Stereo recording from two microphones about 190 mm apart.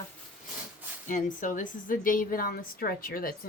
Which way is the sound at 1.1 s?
45° left (ahead or behind).